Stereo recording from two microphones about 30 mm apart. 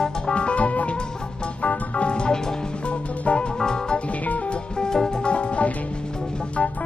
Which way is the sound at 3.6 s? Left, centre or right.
Left.